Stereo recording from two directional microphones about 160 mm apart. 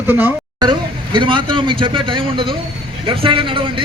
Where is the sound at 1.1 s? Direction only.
30° right (ahead or behind).